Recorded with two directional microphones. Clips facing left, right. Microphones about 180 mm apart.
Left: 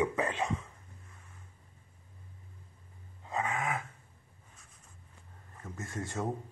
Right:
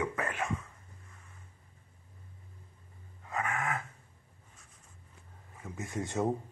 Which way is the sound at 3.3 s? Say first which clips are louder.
Left 1 dB; 20° left (ahead or behind).